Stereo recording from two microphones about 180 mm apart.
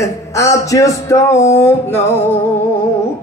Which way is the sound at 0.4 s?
15° left (ahead or behind).